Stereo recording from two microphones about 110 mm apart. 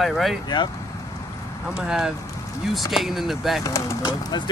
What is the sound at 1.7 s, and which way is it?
Speech, 5° right (ahead or behind).